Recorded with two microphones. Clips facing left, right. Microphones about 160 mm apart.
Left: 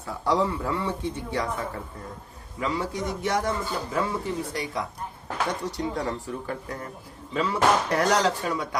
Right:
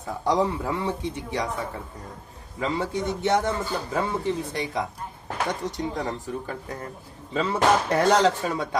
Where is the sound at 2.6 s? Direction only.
25° right (ahead or behind).